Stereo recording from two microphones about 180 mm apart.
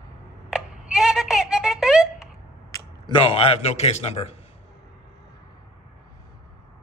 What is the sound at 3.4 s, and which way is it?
Speech, 35° left (ahead or behind).